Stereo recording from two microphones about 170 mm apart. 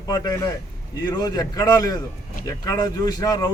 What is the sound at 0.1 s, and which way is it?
Speech, 20° left (ahead or behind).